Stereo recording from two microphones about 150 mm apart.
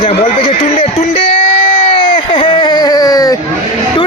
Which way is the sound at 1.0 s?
40° left (ahead or behind).